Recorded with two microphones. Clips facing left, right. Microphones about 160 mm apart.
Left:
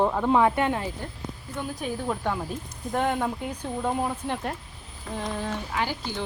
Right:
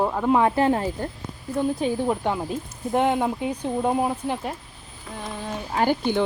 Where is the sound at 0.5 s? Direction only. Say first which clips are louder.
Right 5 dB; 35° right (ahead or behind).